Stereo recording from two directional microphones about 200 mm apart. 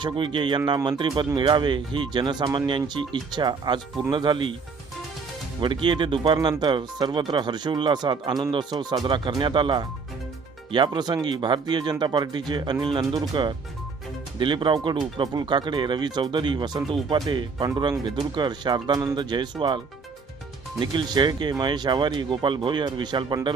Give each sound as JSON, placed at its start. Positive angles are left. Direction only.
{"t": 0.0, "sound": "speech", "side_deg": -25}
{"t": 5.5, "sound": "speech", "side_deg": -25}